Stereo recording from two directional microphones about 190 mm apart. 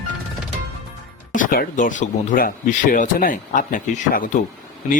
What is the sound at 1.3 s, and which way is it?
Speech, 45° left (ahead or behind).